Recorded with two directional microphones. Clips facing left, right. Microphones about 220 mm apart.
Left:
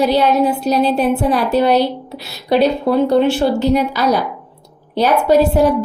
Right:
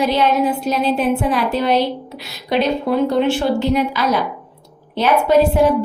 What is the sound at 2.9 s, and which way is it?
A woman's voice, 30° left (ahead or behind).